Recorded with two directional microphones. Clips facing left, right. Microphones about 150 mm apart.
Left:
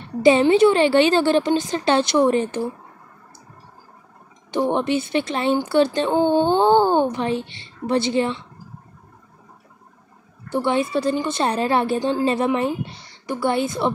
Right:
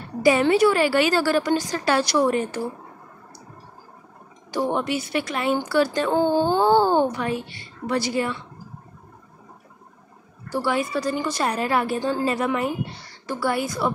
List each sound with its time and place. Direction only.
0.0 s a woman's voice: 25° left (ahead or behind)
4.5 s a woman's voice: 20° left (ahead or behind)
10.5 s a woman's voice: 25° left (ahead or behind)